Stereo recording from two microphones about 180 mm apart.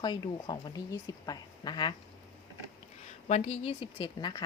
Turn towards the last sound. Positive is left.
turn(degrees=25)  # may be behind; listen again after turning